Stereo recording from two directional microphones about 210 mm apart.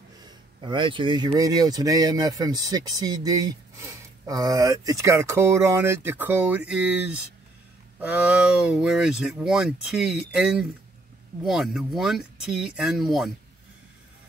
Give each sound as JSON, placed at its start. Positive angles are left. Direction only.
{"t": 0.2, "sound": "speech", "side_deg": -20}